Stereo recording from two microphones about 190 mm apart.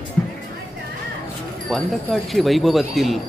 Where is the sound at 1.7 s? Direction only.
5° left (ahead or behind).